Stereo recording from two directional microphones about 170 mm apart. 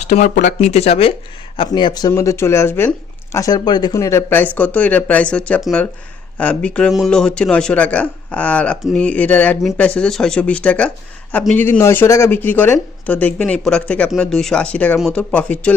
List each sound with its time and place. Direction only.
0.0 s speech: 45° left (ahead or behind); by 15.7 s 5° left (ahead or behind)